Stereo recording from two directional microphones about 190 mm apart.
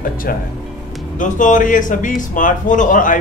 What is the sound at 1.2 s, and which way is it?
Speech, 40° left (ahead or behind).